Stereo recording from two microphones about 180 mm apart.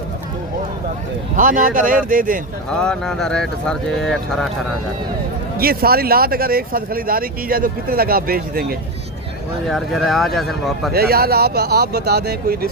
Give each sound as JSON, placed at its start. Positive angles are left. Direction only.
{"t": 1.4, "sound": "speech", "side_deg": -50}
{"t": 2.6, "sound": "speech", "side_deg": 5}
{"t": 5.5, "sound": "speech", "side_deg": -55}
{"t": 9.6, "sound": "speech", "side_deg": 0}
{"t": 10.9, "sound": "speech", "side_deg": -60}